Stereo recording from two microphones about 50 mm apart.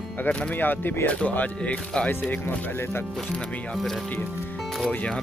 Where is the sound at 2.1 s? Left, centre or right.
Left.